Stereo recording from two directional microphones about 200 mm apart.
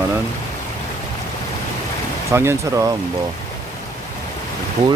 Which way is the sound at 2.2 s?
15° right (ahead or behind).